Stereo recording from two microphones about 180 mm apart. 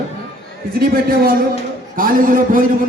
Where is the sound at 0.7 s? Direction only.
55° right (ahead or behind).